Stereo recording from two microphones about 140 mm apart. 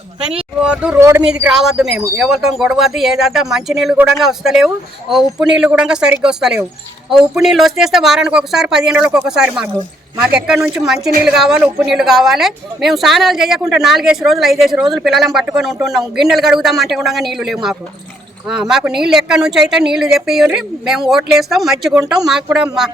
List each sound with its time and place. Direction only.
0.6 s speech: 5° right (ahead or behind)
0.9 s speech: 20° right (ahead or behind)
1.5 s speech: 5° right (ahead or behind)